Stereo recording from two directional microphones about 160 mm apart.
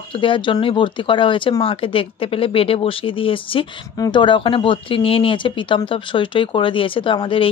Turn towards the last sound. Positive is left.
turn(degrees=35)  # may be behind; listen again after turning